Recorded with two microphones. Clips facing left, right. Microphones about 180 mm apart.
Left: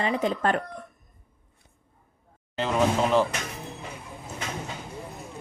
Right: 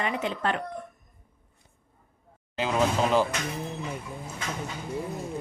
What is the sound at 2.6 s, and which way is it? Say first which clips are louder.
Speech: left 1 dB; centre (ahead or behind).